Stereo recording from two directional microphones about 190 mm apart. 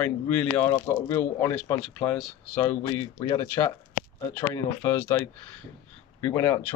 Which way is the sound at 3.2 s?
20° left (ahead or behind).